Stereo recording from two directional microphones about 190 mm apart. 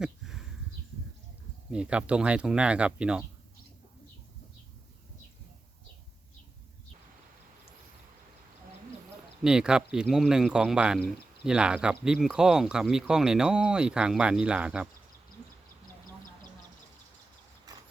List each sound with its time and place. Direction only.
0.0 s a sound: 5° right (ahead or behind)
1.7 s speech: 5° right (ahead or behind)
9.4 s speech: 5° right (ahead or behind)